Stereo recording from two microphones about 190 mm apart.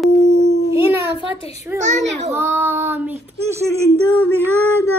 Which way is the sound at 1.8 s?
40° right (ahead or behind).